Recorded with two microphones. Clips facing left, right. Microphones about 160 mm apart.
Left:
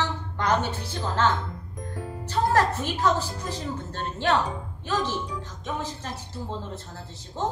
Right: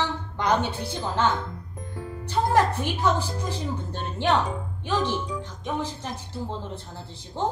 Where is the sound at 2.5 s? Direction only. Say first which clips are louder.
Right 3 dB; 15° right (ahead or behind).